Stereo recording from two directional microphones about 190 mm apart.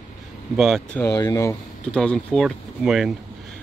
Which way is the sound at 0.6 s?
Centre (ahead or behind).